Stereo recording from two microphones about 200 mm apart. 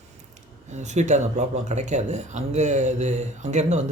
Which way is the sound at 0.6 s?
35° right (ahead or behind).